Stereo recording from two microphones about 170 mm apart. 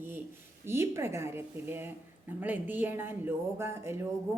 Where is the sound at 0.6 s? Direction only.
15° right (ahead or behind).